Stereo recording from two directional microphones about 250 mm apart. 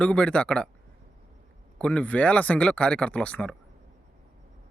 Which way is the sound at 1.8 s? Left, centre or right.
Centre.